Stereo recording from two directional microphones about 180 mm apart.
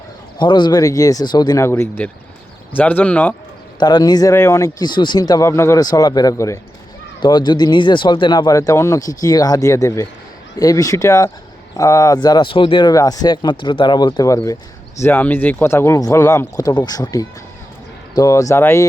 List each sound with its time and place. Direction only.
0.3 s speech: 25° left (ahead or behind); by 3.3 s 10° left (ahead or behind)
3.8 s speech: 20° left (ahead or behind)